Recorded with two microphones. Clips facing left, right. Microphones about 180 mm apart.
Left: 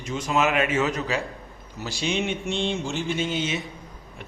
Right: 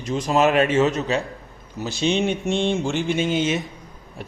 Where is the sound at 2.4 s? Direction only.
50° right (ahead or behind).